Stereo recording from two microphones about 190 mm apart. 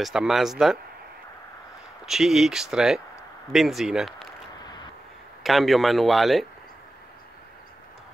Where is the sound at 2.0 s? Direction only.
Centre (ahead or behind).